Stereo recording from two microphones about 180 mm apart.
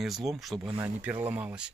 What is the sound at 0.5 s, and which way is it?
Speech, 25° right (ahead or behind).